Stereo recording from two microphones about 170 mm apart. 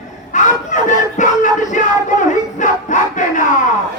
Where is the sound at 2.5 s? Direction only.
45° left (ahead or behind).